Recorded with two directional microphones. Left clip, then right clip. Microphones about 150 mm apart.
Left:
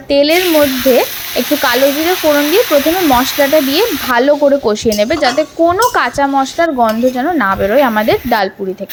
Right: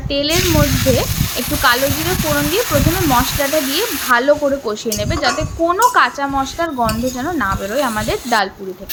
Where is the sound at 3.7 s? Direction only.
45° left (ahead or behind).